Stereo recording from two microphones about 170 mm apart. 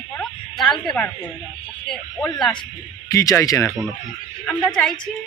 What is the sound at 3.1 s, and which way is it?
Speech, 20° left (ahead or behind).